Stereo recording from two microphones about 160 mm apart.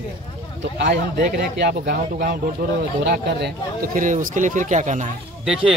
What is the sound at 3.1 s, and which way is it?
Speech, 90° right.